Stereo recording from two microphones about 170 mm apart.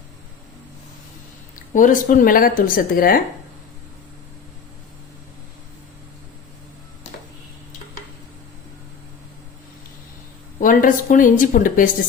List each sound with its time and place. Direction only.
1.5 s speech: 50° left (ahead or behind)
10.6 s speech: 50° left (ahead or behind)